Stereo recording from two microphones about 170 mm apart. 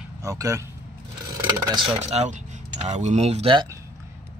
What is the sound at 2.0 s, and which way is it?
Speech, 40° right (ahead or behind).